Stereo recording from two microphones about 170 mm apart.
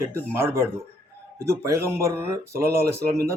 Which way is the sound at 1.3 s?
15° right (ahead or behind).